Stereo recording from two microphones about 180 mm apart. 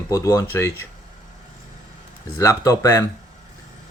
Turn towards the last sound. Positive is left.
turn(degrees=20)  # may be behind; listen again after turning